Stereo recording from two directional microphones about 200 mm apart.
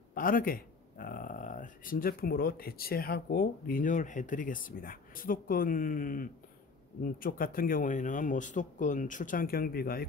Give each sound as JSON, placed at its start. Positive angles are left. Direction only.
{"t": 0.1, "sound": "speech", "side_deg": 45}